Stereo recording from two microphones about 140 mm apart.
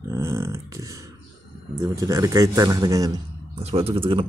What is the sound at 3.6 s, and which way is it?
Speech, 45° right (ahead or behind).